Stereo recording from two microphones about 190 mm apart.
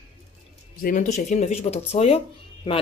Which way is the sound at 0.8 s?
40° left (ahead or behind).